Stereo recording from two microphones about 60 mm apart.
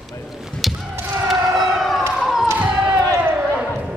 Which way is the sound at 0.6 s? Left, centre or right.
Centre.